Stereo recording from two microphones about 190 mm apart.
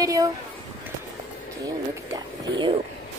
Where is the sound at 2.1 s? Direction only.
25° right (ahead or behind).